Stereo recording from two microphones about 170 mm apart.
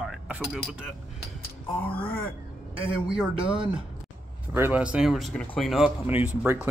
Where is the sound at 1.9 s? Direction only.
5° left (ahead or behind).